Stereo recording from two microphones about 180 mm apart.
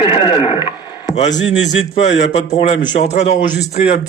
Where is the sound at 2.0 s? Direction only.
40° left (ahead or behind).